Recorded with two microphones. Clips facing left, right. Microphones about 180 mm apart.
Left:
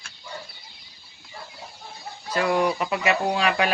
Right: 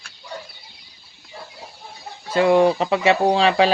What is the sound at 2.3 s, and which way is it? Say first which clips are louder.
Speech: right 7 dB; 25° right (ahead or behind).